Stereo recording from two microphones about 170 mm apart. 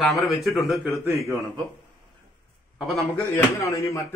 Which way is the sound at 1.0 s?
15° right (ahead or behind).